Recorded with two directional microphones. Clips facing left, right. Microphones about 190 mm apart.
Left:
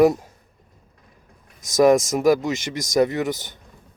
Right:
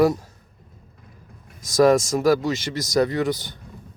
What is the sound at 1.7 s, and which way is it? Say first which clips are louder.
Speech: left 1 dB; 20° left (ahead or behind).